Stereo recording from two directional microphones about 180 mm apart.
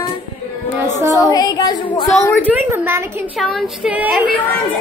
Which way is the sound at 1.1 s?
20° left (ahead or behind).